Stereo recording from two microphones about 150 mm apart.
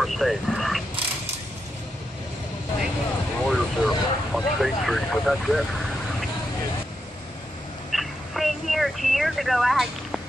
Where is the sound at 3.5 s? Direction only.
Centre (ahead or behind).